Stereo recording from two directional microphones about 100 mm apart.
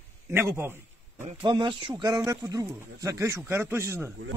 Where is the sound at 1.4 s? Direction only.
50° right (ahead or behind); by 4.1 s 25° right (ahead or behind).